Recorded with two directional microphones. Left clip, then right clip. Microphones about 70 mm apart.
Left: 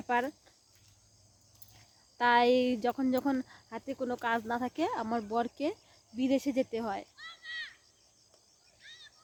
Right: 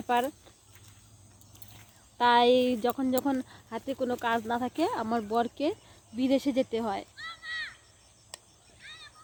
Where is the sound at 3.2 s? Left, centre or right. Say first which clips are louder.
Right 2 dB; left.